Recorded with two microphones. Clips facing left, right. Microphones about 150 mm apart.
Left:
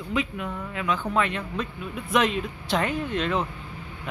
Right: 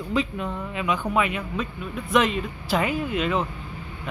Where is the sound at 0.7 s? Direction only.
15° right (ahead or behind).